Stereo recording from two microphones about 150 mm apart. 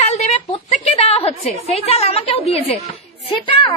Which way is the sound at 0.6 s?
50° left (ahead or behind).